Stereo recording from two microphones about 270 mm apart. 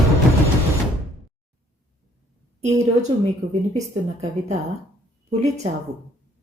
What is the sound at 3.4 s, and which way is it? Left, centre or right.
Speech, right.